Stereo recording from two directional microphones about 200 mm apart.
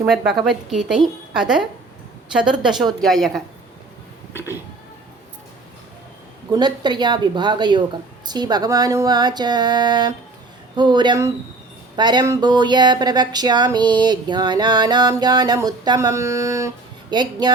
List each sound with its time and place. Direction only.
0.0 s a woman's voice: centre (ahead or behind)
6.5 s speech: 20° right (ahead or behind)